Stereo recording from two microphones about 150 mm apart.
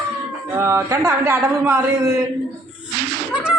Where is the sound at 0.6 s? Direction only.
15° right (ahead or behind).